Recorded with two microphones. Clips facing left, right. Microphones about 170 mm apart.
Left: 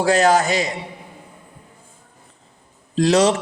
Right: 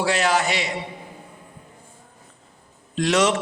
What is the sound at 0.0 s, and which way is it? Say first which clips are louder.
Speech: left 5 dB; 45° left (ahead or behind).